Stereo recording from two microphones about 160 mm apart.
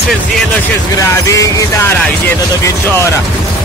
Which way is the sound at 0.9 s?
20° left (ahead or behind).